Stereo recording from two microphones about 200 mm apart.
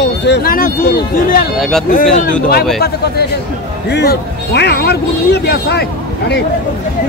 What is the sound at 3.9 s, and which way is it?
A man's voice, 55° left (ahead or behind).